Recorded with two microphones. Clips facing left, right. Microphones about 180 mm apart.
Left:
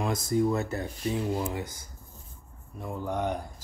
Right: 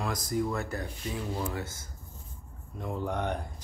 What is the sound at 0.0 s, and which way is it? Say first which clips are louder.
Speech: left 5 dB; 25° left (ahead or behind).